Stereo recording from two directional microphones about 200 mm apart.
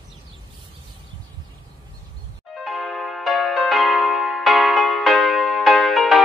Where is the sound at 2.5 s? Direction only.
Centre (ahead or behind).